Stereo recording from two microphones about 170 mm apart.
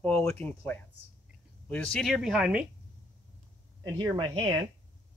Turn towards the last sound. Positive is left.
turn(degrees=-25)  # may be behind; listen again after turning